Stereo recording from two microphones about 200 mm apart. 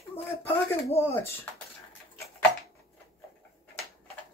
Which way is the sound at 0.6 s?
15° left (ahead or behind).